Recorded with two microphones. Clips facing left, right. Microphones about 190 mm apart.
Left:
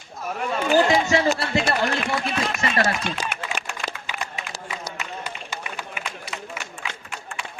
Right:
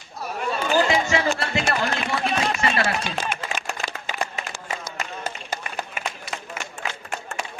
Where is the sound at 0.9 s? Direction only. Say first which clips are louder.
Left 2 dB; 40° left (ahead or behind).